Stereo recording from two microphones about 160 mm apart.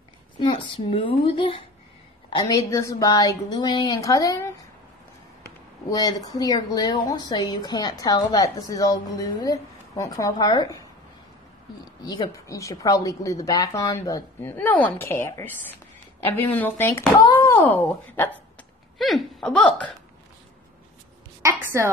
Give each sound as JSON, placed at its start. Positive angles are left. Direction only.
{"t": 0.4, "sound": "a woman's voice", "side_deg": 35}
{"t": 5.9, "sound": "a woman's voice", "side_deg": 25}
{"t": 12.0, "sound": "a woman's voice", "side_deg": 25}
{"t": 18.9, "sound": "a sound", "side_deg": 0}
{"t": 21.4, "sound": "a woman's voice", "side_deg": -15}